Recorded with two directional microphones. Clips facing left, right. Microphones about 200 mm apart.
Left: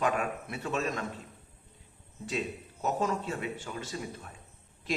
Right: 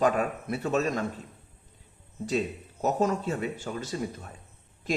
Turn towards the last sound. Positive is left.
turn(degrees=-40)  # may be behind; listen again after turning